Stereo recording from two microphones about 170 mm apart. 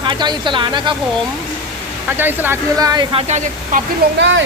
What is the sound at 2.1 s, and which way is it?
Speech, 10° right (ahead or behind).